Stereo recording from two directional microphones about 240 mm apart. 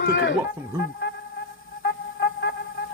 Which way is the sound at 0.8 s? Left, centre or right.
Left.